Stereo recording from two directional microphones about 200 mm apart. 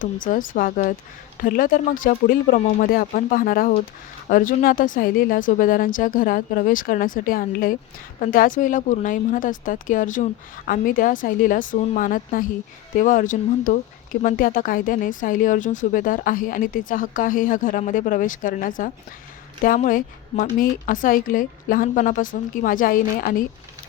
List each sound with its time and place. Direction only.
0.0 s a woman's voice: 40° left (ahead or behind)